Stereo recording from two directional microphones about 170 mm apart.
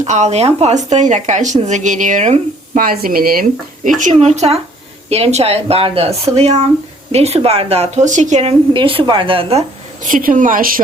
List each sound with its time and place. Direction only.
0.0 s speech: 40° right (ahead or behind); by 3.4 s 60° right (ahead or behind)
3.9 s speech: 45° right (ahead or behind)
10.0 s speech: 50° right (ahead or behind)